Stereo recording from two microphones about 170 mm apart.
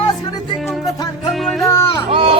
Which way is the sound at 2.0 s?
30° right (ahead or behind).